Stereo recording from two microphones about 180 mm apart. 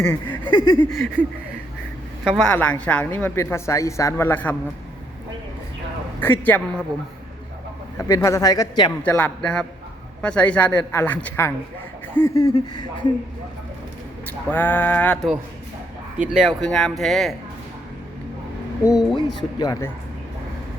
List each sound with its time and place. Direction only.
0.0 s speech: 10° left (ahead or behind)
2.2 s speech: centre (ahead or behind)
6.1 s speech: 10° left (ahead or behind)
7.9 s speech: 20° left (ahead or behind)
9.0 s speech: 10° left (ahead or behind); by 13.1 s 25° left (ahead or behind)
14.5 s speech: 10° left (ahead or behind)
16.1 s speech: 5° right (ahead or behind)
18.9 s speech: 20° left (ahead or behind)